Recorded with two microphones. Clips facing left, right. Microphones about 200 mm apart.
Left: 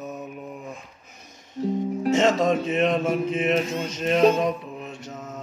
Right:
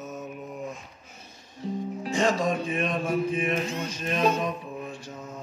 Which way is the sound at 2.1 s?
20° left (ahead or behind).